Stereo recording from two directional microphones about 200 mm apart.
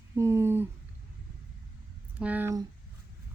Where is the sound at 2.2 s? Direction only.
10° right (ahead or behind).